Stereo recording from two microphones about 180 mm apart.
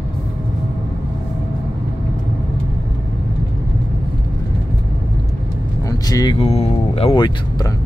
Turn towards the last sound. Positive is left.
turn(degrees=25)  # may be behind; listen again after turning